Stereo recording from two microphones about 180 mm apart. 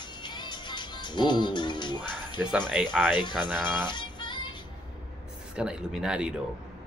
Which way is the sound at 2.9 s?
5° left (ahead or behind).